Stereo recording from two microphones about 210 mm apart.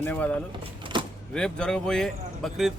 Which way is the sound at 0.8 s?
25° right (ahead or behind).